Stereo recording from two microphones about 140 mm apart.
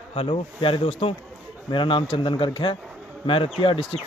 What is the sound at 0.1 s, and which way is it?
Speech, 40° left (ahead or behind).